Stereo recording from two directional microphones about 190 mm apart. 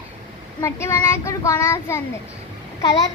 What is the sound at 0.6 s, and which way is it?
A child's voice, 15° left (ahead or behind).